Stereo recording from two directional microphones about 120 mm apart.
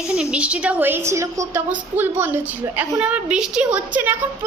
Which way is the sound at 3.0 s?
10° right (ahead or behind).